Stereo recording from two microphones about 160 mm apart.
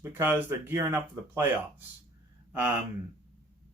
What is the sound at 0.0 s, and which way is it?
Speech, 15° right (ahead or behind).